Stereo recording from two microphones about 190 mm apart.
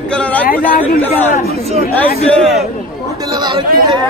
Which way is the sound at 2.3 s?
Centre (ahead or behind).